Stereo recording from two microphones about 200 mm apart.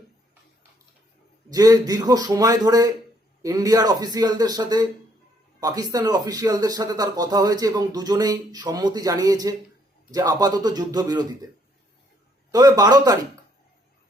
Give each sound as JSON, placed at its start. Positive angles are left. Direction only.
{"t": 1.5, "sound": "speech", "side_deg": -20}
{"t": 12.5, "sound": "speech", "side_deg": -20}